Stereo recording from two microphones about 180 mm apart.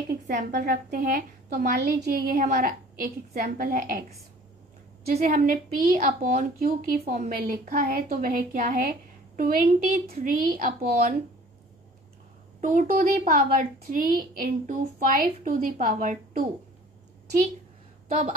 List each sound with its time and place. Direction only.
0.3 s a woman's voice: 40° right (ahead or behind)
0.6 s a woman's voice: 55° right (ahead or behind)
5.0 s a woman's voice: 55° right (ahead or behind)
12.5 s a woman's voice: 45° right (ahead or behind)